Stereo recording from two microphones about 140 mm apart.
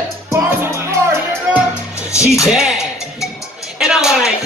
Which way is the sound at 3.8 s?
5° right (ahead or behind).